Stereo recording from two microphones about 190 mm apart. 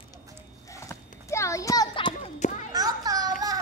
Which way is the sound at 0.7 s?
15° left (ahead or behind).